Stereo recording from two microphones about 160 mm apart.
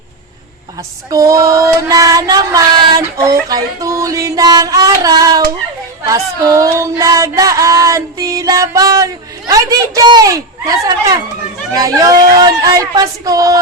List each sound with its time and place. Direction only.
1.1 s music: 20° right (ahead or behind)
9.5 s speech: 20° right (ahead or behind)